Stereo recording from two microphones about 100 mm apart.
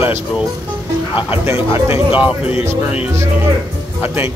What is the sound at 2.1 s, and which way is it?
A man's voice, 15° right (ahead or behind).